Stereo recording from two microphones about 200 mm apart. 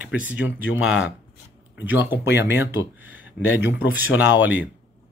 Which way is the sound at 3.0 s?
10° right (ahead or behind).